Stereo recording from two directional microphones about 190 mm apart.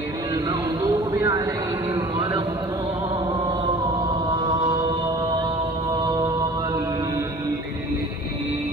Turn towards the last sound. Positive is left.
turn(degrees=-20)  # may be behind; listen again after turning